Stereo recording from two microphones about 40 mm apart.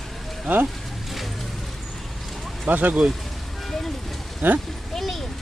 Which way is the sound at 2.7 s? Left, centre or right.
Right.